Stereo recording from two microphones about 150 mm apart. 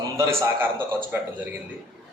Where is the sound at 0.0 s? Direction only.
20° right (ahead or behind).